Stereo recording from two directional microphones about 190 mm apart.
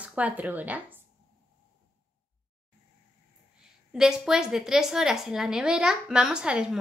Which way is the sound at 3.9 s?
5° right (ahead or behind).